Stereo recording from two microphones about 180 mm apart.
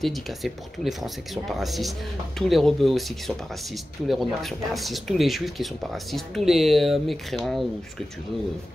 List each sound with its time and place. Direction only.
0.0 s speech: centre (ahead or behind)